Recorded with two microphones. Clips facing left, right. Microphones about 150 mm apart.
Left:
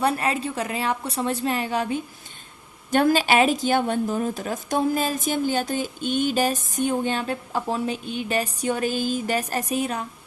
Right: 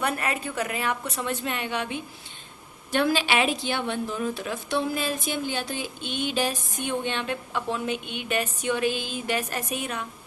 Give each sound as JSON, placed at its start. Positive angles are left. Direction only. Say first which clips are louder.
{"t": 0.0, "sound": "speech", "louder": "left 5 dB", "side_deg": 30}